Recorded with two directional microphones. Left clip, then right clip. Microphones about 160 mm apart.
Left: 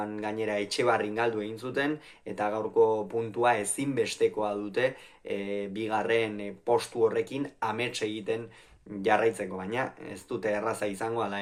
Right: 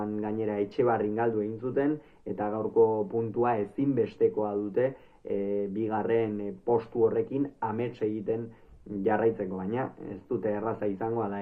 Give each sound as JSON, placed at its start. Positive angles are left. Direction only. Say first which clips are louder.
{"t": 0.0, "sound": "speech", "louder": "even", "side_deg": 15}